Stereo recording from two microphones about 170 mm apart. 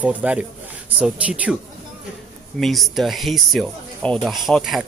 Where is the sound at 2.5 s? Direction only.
Centre (ahead or behind).